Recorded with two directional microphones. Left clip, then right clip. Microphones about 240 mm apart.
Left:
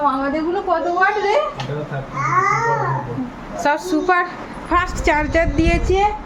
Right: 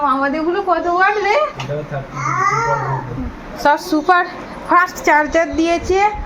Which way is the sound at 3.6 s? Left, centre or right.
Centre.